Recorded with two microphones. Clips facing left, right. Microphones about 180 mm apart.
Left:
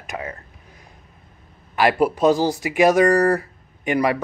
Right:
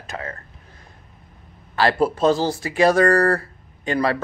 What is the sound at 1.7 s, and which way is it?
Speech, 15° left (ahead or behind).